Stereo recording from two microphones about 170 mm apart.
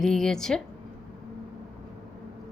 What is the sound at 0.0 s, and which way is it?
Speech, 5° left (ahead or behind).